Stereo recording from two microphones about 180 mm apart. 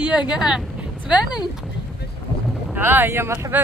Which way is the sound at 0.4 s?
5° right (ahead or behind).